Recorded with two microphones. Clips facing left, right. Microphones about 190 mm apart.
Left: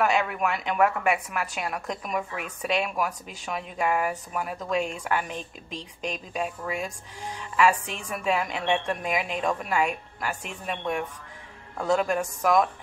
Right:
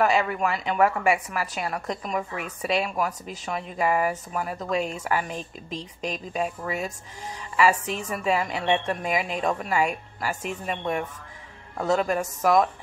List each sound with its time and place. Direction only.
0.0 s a woman's voice: centre (ahead or behind)
5.3 s speech: 35° right (ahead or behind)
5.8 s a woman's voice: centre (ahead or behind)
11.7 s a woman's voice: 5° right (ahead or behind)